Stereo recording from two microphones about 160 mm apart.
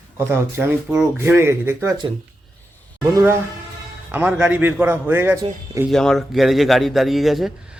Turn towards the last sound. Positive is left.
turn(degrees=0)  # may be behind; listen again after turning